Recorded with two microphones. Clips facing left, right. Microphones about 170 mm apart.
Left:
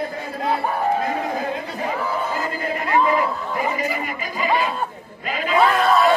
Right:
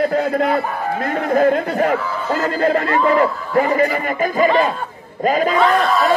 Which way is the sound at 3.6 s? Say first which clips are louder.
Right 10 dB; 60° right (ahead or behind).